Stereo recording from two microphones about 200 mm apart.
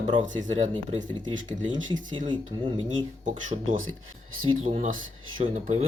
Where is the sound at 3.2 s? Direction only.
35° right (ahead or behind).